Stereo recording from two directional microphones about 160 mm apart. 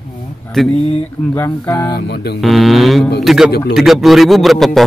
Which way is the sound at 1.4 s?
15° left (ahead or behind).